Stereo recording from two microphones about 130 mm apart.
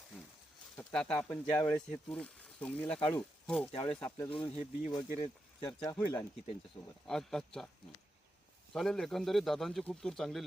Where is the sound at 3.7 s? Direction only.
45° left (ahead or behind).